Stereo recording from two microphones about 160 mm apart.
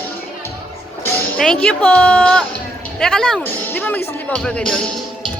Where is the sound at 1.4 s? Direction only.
5° left (ahead or behind).